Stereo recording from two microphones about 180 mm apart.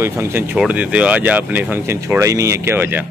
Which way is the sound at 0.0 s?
15° right (ahead or behind).